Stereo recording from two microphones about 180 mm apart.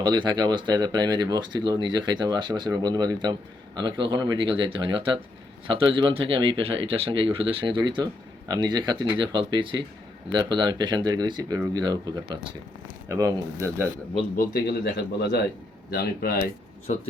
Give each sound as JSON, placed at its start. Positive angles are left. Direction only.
{"t": 0.0, "sound": "speech", "side_deg": -25}
{"t": 14.3, "sound": "speech", "side_deg": 60}